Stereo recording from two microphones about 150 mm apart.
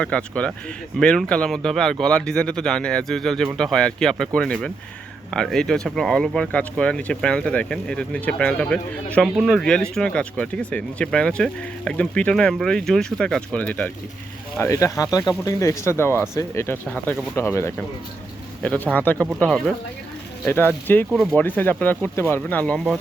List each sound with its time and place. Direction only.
0.0 s speech: 5° left (ahead or behind)
14.6 s speech: 20° left (ahead or behind)
16.8 s speech: 5° left (ahead or behind)
17.3 s speech: 15° left (ahead or behind)
18.9 s speech: 10° left (ahead or behind)
21.1 s speech: centre (ahead or behind)
21.3 s speech: 10° left (ahead or behind)